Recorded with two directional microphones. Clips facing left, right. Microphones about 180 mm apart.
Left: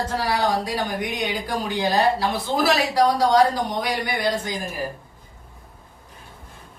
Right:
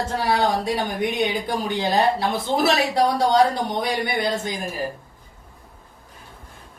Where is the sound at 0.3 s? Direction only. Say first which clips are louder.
Right 3 dB; 25° right (ahead or behind).